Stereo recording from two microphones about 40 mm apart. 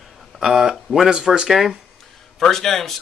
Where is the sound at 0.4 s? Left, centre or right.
Centre.